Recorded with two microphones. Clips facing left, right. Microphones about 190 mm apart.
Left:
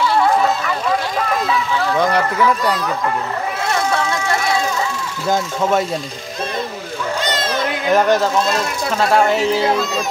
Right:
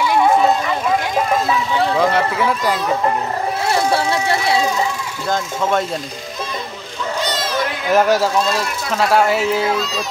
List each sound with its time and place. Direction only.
0.0 s vehicle: 15° right (ahead or behind)
2.3 s speech: 5° right (ahead or behind)
3.6 s a sound: 30° right (ahead or behind)
5.3 s speech: 5° left (ahead or behind)
7.9 s speech: 5° right (ahead or behind)
9.8 s speech: 50° left (ahead or behind)